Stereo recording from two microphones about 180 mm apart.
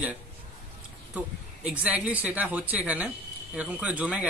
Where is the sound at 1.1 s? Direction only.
10° right (ahead or behind).